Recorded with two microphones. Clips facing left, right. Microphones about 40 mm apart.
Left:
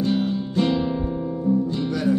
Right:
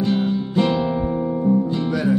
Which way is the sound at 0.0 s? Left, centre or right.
Centre.